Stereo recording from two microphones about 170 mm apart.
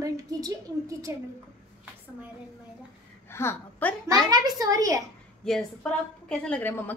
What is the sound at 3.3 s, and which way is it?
Speech, 15° left (ahead or behind).